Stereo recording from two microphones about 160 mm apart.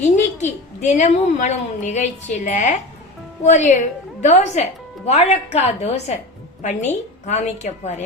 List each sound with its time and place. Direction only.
0.0 s a woman's voice: 50° left (ahead or behind)